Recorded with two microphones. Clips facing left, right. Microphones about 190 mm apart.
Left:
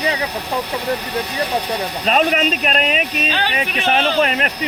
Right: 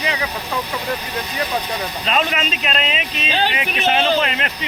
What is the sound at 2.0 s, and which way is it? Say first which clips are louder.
Speech: left 5 dB; 45° left (ahead or behind).